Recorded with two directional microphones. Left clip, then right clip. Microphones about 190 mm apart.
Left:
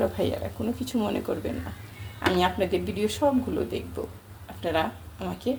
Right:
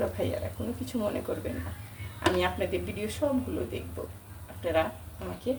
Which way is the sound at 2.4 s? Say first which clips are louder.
Left 5 dB; 40° left (ahead or behind).